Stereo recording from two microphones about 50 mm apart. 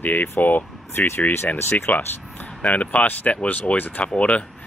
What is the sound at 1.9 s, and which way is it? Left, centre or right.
Speech, left.